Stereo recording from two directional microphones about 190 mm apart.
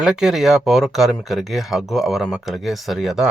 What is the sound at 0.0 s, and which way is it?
Speech, 5° right (ahead or behind).